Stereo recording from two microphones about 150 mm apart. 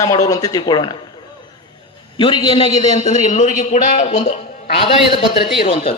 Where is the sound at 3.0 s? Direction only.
55° left (ahead or behind).